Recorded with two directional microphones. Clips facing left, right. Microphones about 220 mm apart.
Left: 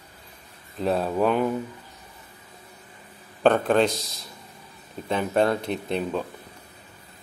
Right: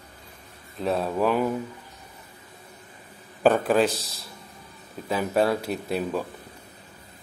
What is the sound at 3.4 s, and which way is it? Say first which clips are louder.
Speech: even; 5° right (ahead or behind).